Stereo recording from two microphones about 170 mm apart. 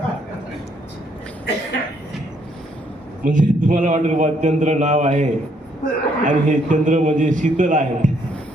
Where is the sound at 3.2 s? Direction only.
50° right (ahead or behind).